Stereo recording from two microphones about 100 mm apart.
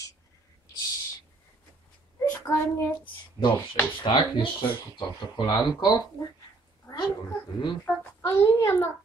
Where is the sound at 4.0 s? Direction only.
55° left (ahead or behind).